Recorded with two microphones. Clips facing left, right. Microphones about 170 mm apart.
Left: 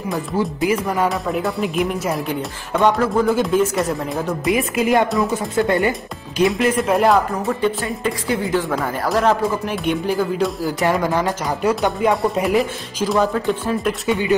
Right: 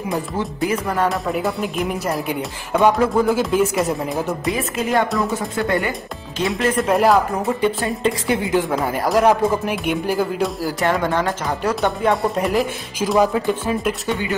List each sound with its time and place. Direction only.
0.7 s speech: 5° left (ahead or behind)
4.5 s speech: 20° left (ahead or behind)
5.0 s speech: centre (ahead or behind)
5.6 s speech: 20° left (ahead or behind)
6.4 s speech: centre (ahead or behind)
7.6 s a woman's voice: 20° right (ahead or behind)